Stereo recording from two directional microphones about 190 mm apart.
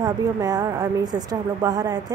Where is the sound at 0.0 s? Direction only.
20° right (ahead or behind).